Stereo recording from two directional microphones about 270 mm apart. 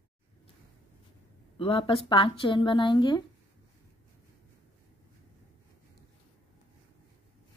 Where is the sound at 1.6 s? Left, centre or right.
Left.